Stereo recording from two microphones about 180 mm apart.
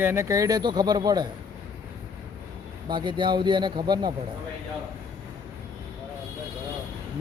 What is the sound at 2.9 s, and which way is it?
Speech, 25° right (ahead or behind).